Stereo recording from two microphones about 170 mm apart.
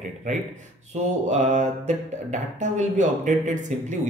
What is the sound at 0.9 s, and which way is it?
Speech, 45° right (ahead or behind).